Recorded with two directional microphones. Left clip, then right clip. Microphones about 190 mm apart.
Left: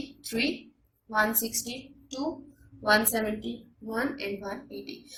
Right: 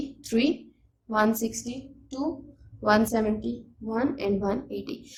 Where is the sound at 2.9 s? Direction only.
45° right (ahead or behind).